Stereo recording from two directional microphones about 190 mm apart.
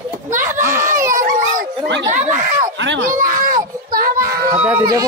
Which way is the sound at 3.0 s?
45° right (ahead or behind).